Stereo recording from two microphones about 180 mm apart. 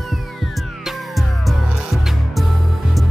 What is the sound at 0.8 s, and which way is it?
Music, centre (ahead or behind).